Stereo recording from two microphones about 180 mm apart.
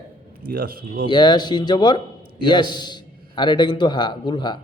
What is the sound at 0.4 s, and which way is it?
Speech, 55° right (ahead or behind).